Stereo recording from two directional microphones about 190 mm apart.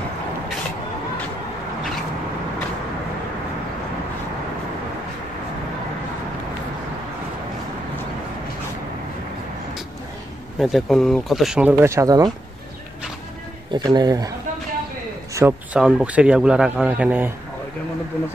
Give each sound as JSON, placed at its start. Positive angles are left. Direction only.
{"t": 10.6, "sound": "a man's voice", "side_deg": 0}
{"t": 13.7, "sound": "speech", "side_deg": -25}
{"t": 15.3, "sound": "a man's voice", "side_deg": -10}